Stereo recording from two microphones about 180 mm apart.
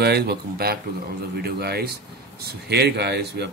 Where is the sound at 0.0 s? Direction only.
65° right (ahead or behind).